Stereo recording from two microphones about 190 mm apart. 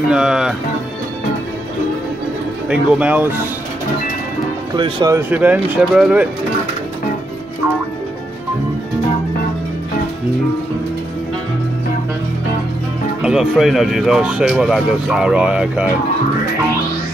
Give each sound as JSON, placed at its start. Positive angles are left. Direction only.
{"t": 0.1, "sound": "speech", "side_deg": -5}
{"t": 2.7, "sound": "speech", "side_deg": -5}
{"t": 4.7, "sound": "speech", "side_deg": -20}
{"t": 5.3, "sound": "speech", "side_deg": -10}
{"t": 13.2, "sound": "speech", "side_deg": -5}